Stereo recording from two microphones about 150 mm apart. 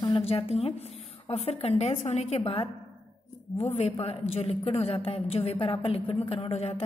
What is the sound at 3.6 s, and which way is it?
A woman's voice, 45° left (ahead or behind).